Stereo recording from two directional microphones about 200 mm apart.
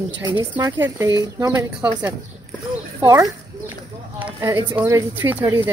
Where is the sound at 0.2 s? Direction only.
20° right (ahead or behind).